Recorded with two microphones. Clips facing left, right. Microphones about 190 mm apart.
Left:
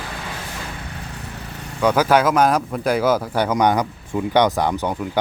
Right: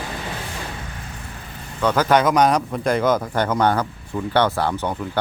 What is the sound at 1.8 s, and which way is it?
Speech, 10° left (ahead or behind).